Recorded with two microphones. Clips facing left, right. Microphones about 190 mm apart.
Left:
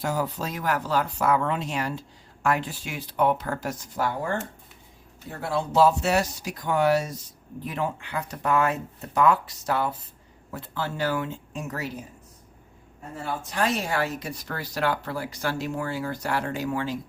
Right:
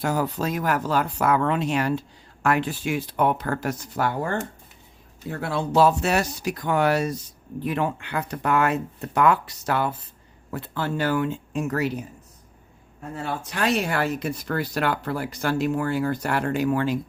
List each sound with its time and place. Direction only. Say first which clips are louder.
0.0 s speech: right 3 dB; 60° right (ahead or behind)
5.3 s speech: right 2 dB; 65° right (ahead or behind)
13.1 s speech: even; 70° right (ahead or behind)